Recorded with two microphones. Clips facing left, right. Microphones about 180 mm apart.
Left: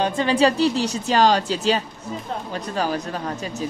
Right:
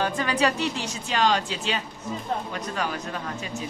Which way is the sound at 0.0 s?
25° left (ahead or behind).